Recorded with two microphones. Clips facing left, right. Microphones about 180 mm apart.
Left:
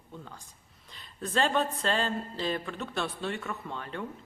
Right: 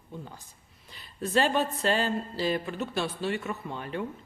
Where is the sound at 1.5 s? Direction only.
5° right (ahead or behind).